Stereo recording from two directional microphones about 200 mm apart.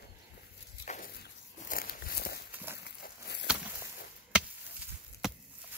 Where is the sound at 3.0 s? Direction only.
55° left (ahead or behind).